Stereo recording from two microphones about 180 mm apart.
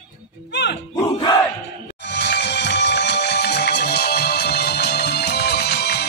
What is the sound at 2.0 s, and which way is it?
Music, 75° left (ahead or behind).